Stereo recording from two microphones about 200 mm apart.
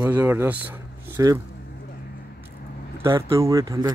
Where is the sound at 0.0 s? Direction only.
10° right (ahead or behind).